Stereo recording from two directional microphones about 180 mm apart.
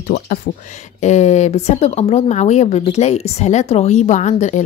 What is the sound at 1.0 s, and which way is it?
Speech, 40° left (ahead or behind).